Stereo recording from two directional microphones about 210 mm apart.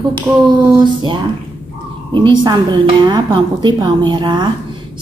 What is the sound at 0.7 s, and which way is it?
Speech, 25° right (ahead or behind).